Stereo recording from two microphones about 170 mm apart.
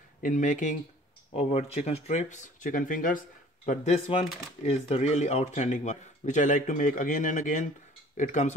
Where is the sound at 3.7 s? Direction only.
40° left (ahead or behind).